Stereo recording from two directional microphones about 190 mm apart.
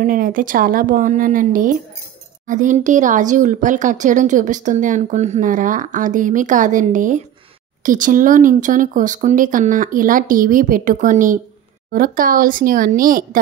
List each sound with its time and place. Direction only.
0.0 s speech: 45° right (ahead or behind)